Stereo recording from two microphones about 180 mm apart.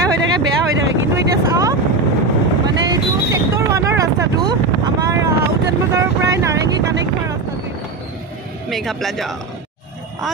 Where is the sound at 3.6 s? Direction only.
15° right (ahead or behind).